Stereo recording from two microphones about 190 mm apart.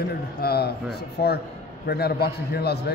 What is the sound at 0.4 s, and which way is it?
Speech, 55° left (ahead or behind).